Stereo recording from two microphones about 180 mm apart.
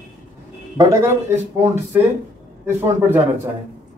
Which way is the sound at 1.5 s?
15° right (ahead or behind).